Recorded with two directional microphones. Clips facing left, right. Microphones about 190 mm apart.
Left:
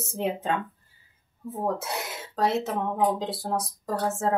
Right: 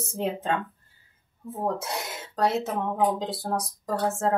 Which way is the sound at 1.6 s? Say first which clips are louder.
Even; centre (ahead or behind).